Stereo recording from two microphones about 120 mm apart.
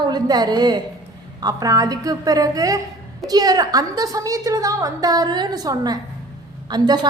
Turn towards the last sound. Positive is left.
turn(degrees=-35)  # may be behind; listen again after turning